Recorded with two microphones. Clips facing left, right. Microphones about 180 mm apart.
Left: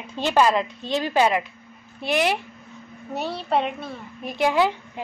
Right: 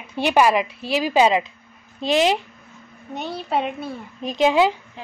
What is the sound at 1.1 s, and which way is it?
A woman's voice, 20° right (ahead or behind).